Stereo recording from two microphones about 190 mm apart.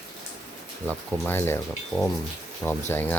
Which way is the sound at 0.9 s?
10° left (ahead or behind).